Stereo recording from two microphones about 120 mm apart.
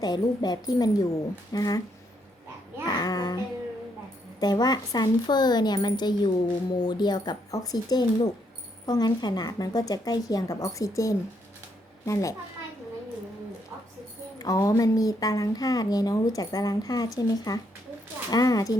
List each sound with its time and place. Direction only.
0.0 s speech: 35° left (ahead or behind)
2.8 s a sound: 35° left (ahead or behind)
4.4 s a child's voice: 35° left (ahead or behind)
14.3 s speech: 30° left (ahead or behind)